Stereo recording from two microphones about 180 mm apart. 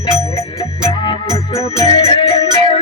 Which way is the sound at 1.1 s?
20° left (ahead or behind).